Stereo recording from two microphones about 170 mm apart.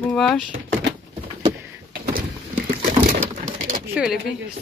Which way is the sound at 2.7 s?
50° right (ahead or behind).